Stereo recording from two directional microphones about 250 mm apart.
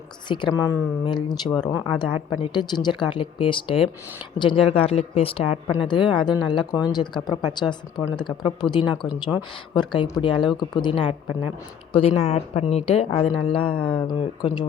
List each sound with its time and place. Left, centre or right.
0.3 s a woman's voice: centre